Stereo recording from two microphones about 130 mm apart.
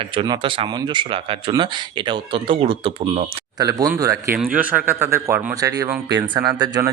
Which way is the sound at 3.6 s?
30° right (ahead or behind).